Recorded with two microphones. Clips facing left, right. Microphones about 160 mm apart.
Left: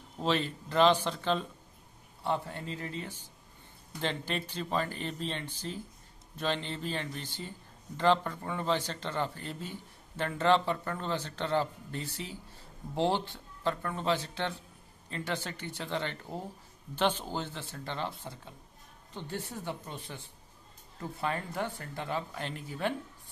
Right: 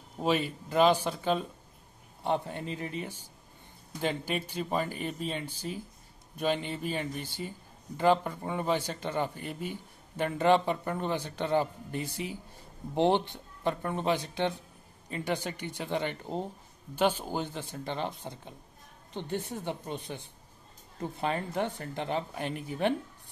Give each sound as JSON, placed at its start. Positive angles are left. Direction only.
{"t": 0.2, "sound": "a man's voice", "side_deg": -10}
{"t": 16.9, "sound": "a man's voice", "side_deg": -10}